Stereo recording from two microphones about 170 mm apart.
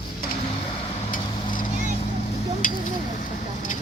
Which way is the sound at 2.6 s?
50° left (ahead or behind).